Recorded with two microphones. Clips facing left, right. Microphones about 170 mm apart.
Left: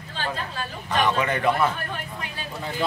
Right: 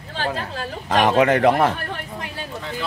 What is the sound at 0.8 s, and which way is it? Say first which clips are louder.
Speech: right 7 dB; 90° right.